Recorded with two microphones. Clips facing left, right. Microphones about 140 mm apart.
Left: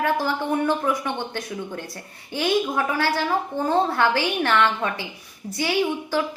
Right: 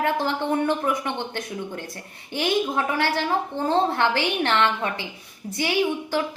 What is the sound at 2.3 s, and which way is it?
A woman's voice, 20° right (ahead or behind).